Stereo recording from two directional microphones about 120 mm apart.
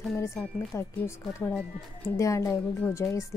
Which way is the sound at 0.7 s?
20° left (ahead or behind).